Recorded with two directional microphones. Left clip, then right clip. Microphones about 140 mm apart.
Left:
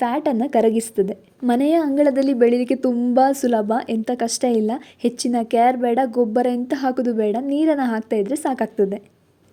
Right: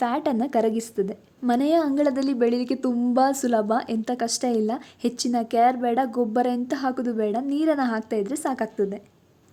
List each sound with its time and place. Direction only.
0.0 s a woman's voice: 10° left (ahead or behind); by 9.0 s 30° left (ahead or behind)